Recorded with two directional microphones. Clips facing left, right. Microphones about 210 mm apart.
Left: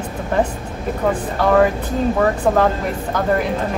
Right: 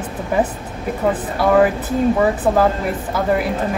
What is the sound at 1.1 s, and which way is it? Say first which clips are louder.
Speech: right 1 dB; 5° right (ahead or behind).